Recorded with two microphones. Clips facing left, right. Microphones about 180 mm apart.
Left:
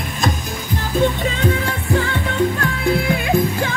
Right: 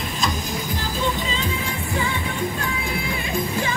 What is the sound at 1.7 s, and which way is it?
Music, 70° left (ahead or behind).